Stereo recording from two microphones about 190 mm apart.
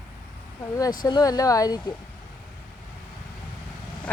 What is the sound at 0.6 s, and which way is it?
Speech, 20° left (ahead or behind).